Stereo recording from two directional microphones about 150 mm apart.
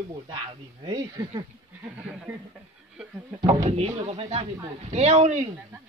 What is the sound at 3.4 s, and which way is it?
Speech, 35° right (ahead or behind).